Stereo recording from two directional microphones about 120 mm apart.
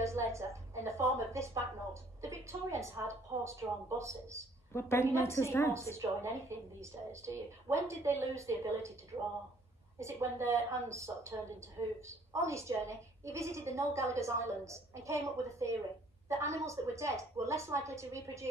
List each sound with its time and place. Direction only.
0.0 s a woman's voice: 25° right (ahead or behind)
4.7 s a woman's voice: 20° left (ahead or behind)
5.9 s a woman's voice: 25° right (ahead or behind)